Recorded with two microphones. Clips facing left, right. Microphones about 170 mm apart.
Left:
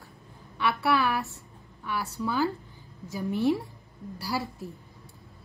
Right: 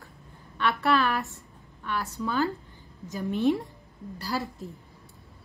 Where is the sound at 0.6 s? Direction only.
10° left (ahead or behind).